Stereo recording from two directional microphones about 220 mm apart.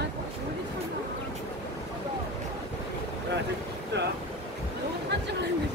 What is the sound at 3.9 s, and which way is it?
Boat, 50° right (ahead or behind).